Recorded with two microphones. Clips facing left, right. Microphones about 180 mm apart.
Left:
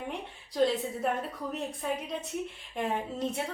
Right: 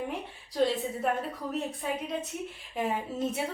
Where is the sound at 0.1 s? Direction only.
Centre (ahead or behind).